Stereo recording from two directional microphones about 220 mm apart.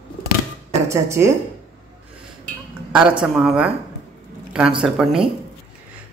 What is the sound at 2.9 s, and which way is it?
Speech, 5° right (ahead or behind).